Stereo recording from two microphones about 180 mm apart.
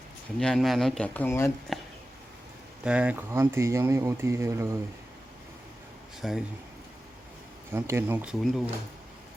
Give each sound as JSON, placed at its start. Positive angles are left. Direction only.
{"t": 0.3, "sound": "speech", "side_deg": 0}
{"t": 2.8, "sound": "speech", "side_deg": -5}
{"t": 6.2, "sound": "speech", "side_deg": 0}
{"t": 7.7, "sound": "speech", "side_deg": -15}